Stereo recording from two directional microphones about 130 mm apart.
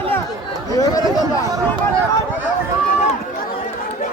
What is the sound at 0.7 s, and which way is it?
Speech, 30° left (ahead or behind).